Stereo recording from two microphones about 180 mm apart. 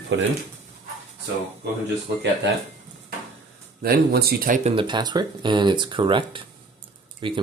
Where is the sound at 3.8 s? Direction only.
60° right (ahead or behind).